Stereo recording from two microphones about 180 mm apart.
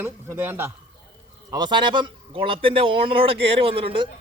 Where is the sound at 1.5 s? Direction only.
25° right (ahead or behind).